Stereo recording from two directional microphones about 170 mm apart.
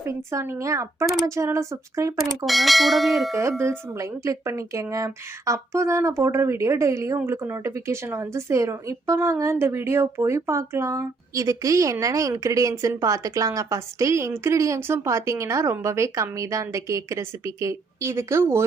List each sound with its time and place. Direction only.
0.0 s speech: 15° right (ahead or behind)
2.4 s speech: centre (ahead or behind)
3.6 s speech: 15° right (ahead or behind)